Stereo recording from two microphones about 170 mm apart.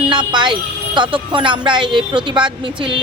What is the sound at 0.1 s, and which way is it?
Speech, 25° right (ahead or behind).